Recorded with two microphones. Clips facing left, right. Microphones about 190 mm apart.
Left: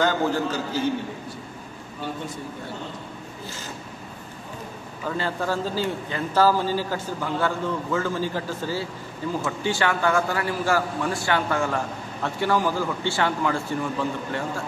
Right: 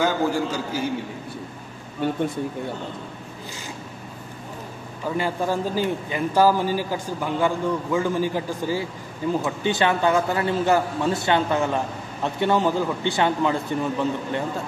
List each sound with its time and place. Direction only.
0.0 s speech: 10° right (ahead or behind)
5.0 s a man's voice: 15° right (ahead or behind)